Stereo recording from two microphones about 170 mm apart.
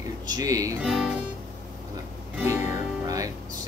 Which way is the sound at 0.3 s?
20° right (ahead or behind).